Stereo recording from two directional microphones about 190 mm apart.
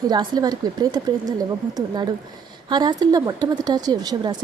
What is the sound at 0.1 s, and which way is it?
A woman's voice, 20° right (ahead or behind).